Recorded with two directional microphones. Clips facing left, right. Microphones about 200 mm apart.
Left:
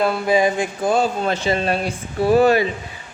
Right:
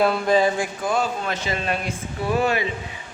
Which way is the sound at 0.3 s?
20° left (ahead or behind).